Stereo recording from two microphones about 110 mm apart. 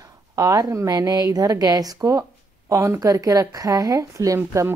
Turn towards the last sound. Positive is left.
turn(degrees=-25)  # may be behind; listen again after turning